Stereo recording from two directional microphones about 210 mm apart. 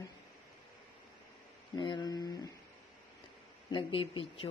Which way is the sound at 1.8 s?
20° left (ahead or behind).